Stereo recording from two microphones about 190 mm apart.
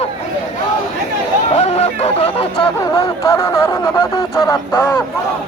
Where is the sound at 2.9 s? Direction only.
15° left (ahead or behind).